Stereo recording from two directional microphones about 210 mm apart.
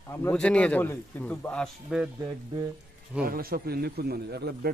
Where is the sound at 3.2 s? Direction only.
45° right (ahead or behind).